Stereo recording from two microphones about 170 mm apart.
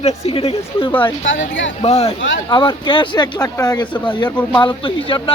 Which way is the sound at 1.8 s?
35° left (ahead or behind).